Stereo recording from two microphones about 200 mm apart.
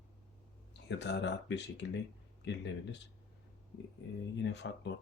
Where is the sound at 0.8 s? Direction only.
60° left (ahead or behind).